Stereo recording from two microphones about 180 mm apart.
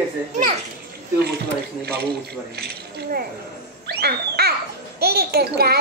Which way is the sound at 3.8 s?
60° right (ahead or behind).